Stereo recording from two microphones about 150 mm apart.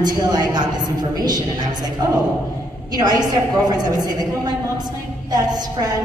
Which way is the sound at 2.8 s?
25° right (ahead or behind).